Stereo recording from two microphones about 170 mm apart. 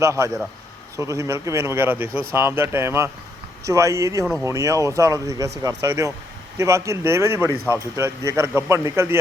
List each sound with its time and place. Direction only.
0.0 s a man's voice: 15° right (ahead or behind)